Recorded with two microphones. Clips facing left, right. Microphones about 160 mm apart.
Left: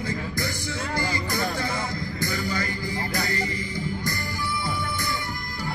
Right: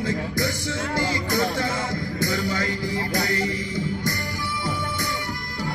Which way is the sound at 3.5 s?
90° right.